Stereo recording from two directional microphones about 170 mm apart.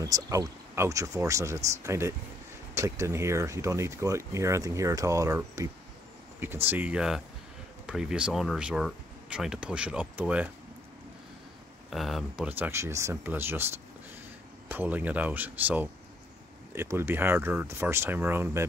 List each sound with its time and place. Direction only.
0.0 s speech: 20° right (ahead or behind)
11.9 s speech: centre (ahead or behind)
12.4 s speech: 10° right (ahead or behind)